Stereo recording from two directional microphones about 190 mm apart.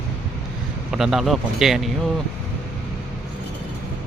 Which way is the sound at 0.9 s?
Centre (ahead or behind).